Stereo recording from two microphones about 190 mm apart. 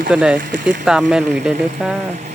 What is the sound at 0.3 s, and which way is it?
Speech, 50° right (ahead or behind).